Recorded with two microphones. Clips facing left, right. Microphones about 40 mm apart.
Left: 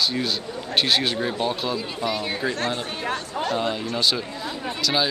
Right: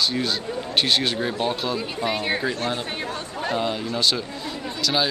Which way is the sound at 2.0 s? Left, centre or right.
Right.